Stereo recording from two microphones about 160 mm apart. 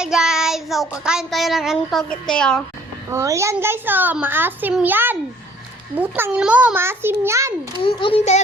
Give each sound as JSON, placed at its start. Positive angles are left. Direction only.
{"t": 0.0, "sound": "child singing", "side_deg": -5}
{"t": 0.9, "sound": "a woman's voice", "side_deg": -5}
{"t": 3.1, "sound": "a child's voice", "side_deg": -15}
{"t": 7.8, "sound": "a child's voice", "side_deg": 30}